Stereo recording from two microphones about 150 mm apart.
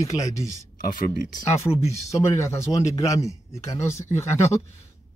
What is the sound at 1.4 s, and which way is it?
Speech, 20° left (ahead or behind).